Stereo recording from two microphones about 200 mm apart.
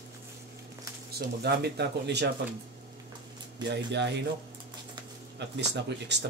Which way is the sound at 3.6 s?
60° right (ahead or behind).